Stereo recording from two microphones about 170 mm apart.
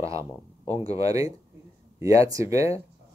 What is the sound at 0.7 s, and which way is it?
Speech, 35° left (ahead or behind).